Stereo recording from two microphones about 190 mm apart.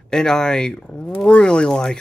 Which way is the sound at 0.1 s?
5° left (ahead or behind).